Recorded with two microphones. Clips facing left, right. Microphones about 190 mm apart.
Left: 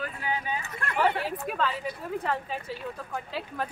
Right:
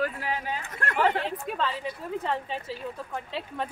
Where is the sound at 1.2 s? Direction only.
Centre (ahead or behind).